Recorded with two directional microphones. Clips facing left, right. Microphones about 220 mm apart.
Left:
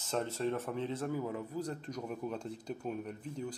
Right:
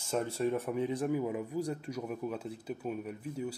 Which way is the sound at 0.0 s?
10° right (ahead or behind).